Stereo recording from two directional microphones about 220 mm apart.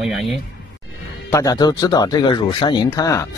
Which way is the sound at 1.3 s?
15° left (ahead or behind).